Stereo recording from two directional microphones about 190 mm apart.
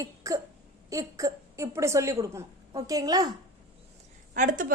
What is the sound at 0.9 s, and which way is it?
A woman's voice, 15° right (ahead or behind).